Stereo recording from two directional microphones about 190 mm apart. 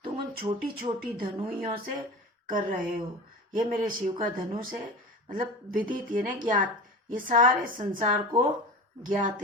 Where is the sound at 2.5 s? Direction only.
45° right (ahead or behind).